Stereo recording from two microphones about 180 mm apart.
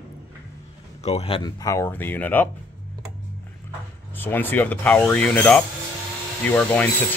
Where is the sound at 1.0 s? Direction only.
35° left (ahead or behind).